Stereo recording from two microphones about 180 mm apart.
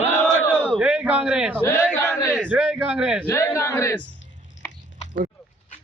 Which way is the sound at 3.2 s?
15° left (ahead or behind).